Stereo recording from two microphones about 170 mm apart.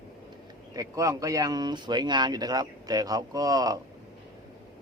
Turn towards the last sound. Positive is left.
turn(degrees=-20)  # may be behind; listen again after turning